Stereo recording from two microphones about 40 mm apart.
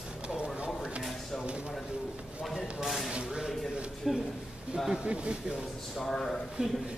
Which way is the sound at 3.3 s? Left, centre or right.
Centre.